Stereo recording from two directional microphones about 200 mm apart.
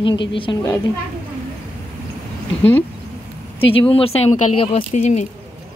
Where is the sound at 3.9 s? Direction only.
30° left (ahead or behind).